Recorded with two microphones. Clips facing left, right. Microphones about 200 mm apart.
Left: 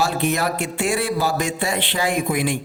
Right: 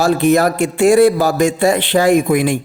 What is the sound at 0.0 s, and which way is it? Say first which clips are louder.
A woman's voice: right 9 dB; 45° right (ahead or behind).